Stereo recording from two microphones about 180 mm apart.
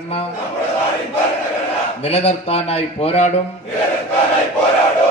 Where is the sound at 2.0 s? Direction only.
35° left (ahead or behind).